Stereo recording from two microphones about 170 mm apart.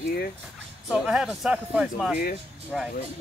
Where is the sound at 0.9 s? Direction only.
5° right (ahead or behind).